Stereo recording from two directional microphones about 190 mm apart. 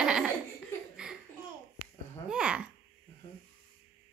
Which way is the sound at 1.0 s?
5° right (ahead or behind).